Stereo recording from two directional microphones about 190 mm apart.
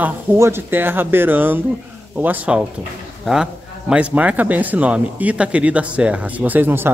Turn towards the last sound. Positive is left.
turn(degrees=-10)  # may be behind; listen again after turning